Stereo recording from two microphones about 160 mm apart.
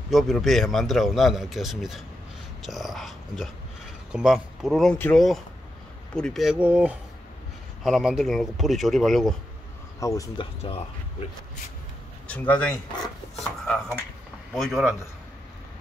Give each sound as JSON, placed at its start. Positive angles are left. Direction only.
{"t": 0.1, "sound": "a man's voice", "side_deg": 0}
{"t": 9.9, "sound": "speech", "side_deg": 20}
{"t": 10.4, "sound": "speech", "side_deg": 35}
{"t": 12.3, "sound": "a man's voice", "side_deg": 10}